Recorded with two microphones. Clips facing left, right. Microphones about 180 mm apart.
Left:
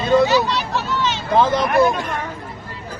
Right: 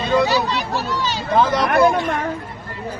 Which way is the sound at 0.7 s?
35° right (ahead or behind).